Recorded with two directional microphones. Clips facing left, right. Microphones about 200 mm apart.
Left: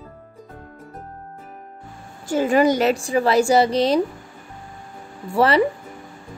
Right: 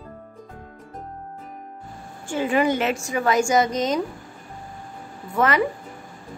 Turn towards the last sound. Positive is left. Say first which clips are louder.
# left 4 dB
turn(degrees=30)  # may be behind; listen again after turning